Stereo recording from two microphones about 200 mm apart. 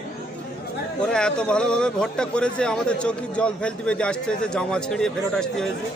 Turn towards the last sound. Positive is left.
turn(degrees=5)  # may be behind; listen again after turning